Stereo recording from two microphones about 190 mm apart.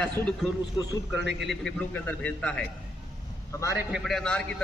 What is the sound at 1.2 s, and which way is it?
Speech, 65° right (ahead or behind).